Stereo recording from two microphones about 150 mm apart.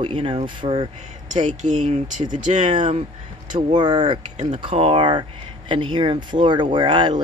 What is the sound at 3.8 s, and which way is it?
Speech, 30° right (ahead or behind).